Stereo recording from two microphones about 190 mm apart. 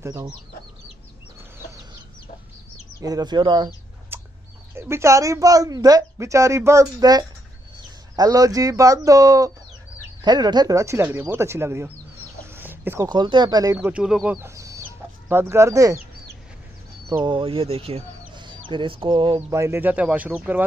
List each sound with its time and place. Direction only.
0.0 s speech: 15° right (ahead or behind)
3.0 s speech: 20° right (ahead or behind)
4.1 s chicken: 10° right (ahead or behind)
4.7 s speech: 15° right (ahead or behind)
12.4 s chicken: 10° right (ahead or behind)
13.1 s speech: 25° right (ahead or behind)
13.7 s speech: 5° right (ahead or behind)
17.1 s speech: 25° right (ahead or behind)
19.5 s speech: 15° right (ahead or behind)